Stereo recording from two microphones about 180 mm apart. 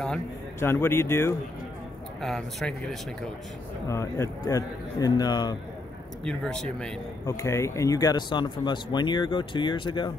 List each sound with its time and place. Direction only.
0.6 s a man's voice: 15° left (ahead or behind)
2.2 s speech: centre (ahead or behind)
3.8 s speech: 15° left (ahead or behind)
6.2 s speech: 5° left (ahead or behind)
7.2 s speech: 15° left (ahead or behind)